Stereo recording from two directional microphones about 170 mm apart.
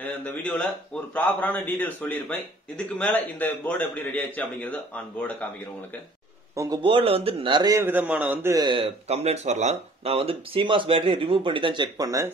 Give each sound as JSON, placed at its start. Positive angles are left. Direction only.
{"t": 0.0, "sound": "a man's voice", "side_deg": 5}
{"t": 6.5, "sound": "speech", "side_deg": -20}
{"t": 6.8, "sound": "a man's voice", "side_deg": -35}
{"t": 8.6, "sound": "speech", "side_deg": -35}